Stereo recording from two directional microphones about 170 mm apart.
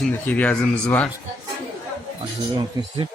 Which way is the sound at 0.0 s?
10° left (ahead or behind).